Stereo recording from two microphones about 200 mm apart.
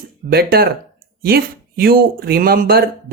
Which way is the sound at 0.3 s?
50° right (ahead or behind).